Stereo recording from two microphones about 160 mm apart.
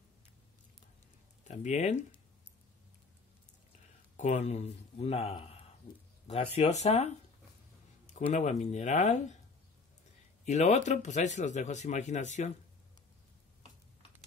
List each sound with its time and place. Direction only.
1.4 s speech: 45° left (ahead or behind)
4.2 s speech: 45° left (ahead or behind)
8.1 s speech: 45° left (ahead or behind)
10.4 s speech: 45° left (ahead or behind)